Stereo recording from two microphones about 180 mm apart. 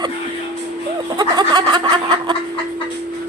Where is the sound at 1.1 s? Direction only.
25° right (ahead or behind).